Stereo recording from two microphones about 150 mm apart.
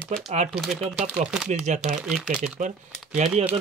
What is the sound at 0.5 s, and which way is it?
Speech, 5° right (ahead or behind).